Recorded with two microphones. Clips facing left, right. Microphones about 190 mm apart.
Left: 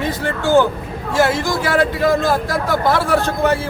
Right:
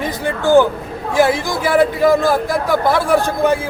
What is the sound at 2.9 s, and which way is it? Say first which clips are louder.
Speech: right 2 dB; 15° right (ahead or behind).